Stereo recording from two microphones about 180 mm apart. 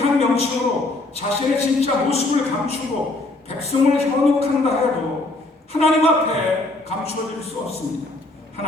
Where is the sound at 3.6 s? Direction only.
35° left (ahead or behind).